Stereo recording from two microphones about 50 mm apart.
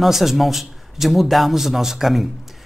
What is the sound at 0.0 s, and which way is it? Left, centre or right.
Speech, centre.